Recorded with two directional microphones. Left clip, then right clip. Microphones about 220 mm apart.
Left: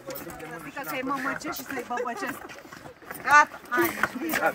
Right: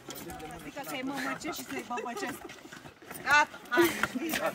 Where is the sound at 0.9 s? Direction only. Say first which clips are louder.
Left 6 dB; 5° right (ahead or behind).